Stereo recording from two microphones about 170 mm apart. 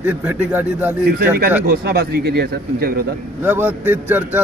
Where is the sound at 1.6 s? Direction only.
65° right (ahead or behind).